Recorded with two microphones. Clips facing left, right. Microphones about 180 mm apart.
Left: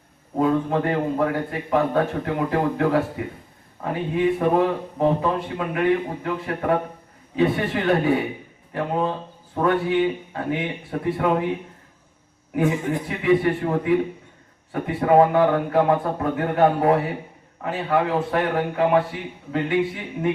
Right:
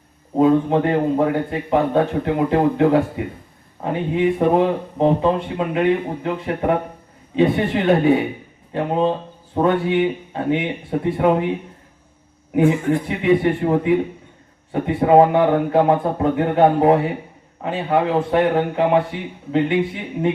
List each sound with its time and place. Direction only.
0.3 s speech: 20° right (ahead or behind)
13.1 s speech: 20° right (ahead or behind)